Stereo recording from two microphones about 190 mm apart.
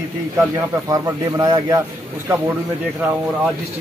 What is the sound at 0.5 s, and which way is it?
Speech, 20° right (ahead or behind).